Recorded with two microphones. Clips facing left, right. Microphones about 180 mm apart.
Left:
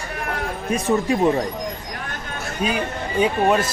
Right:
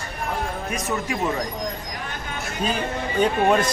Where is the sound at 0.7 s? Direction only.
30° left (ahead or behind).